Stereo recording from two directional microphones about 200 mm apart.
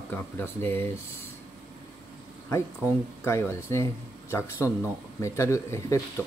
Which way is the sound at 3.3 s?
15° left (ahead or behind).